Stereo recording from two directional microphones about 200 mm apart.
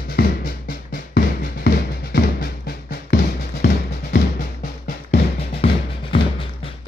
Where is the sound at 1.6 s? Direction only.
50° left (ahead or behind).